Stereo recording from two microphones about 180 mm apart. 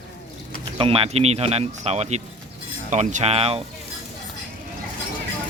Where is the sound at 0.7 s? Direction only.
30° right (ahead or behind).